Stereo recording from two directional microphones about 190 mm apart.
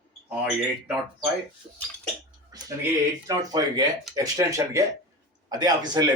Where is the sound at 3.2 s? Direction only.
20° right (ahead or behind).